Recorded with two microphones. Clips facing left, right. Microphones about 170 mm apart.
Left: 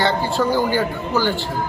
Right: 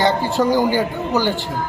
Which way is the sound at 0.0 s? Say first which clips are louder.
Right 2 dB; 15° right (ahead or behind).